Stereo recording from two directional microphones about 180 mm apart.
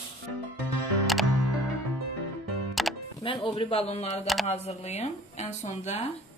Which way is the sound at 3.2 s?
30° left (ahead or behind).